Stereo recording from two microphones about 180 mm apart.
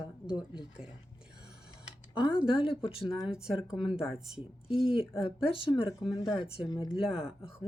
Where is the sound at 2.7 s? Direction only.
30° left (ahead or behind).